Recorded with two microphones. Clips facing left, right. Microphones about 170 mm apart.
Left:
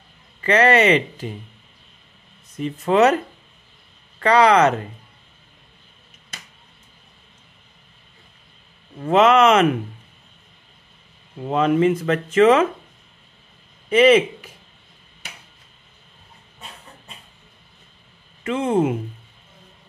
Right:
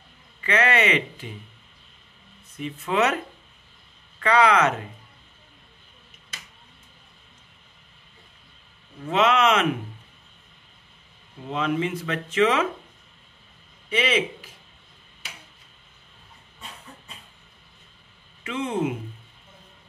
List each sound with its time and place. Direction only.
0.4 s speech: 40° left (ahead or behind)
2.5 s speech: 40° left (ahead or behind)
4.2 s speech: 35° left (ahead or behind)
9.0 s speech: 45° left (ahead or behind)
11.4 s speech: 50° left (ahead or behind)
13.8 s a man's voice: 50° left (ahead or behind)
18.4 s speech: 45° left (ahead or behind)